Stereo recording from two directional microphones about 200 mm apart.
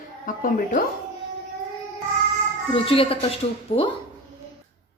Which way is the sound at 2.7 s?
25° left (ahead or behind).